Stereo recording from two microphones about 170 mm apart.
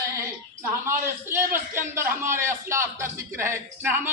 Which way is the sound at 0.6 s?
15° right (ahead or behind).